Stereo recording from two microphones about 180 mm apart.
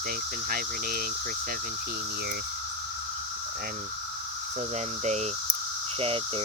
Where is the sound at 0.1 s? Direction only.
55° right (ahead or behind).